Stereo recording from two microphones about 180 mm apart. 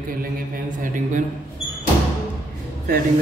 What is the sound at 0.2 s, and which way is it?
A man's voice, 45° right (ahead or behind).